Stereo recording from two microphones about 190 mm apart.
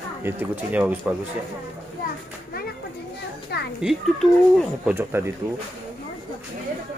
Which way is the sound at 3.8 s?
Centre (ahead or behind).